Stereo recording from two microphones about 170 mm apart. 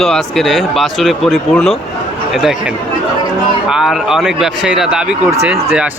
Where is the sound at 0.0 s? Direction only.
Centre (ahead or behind).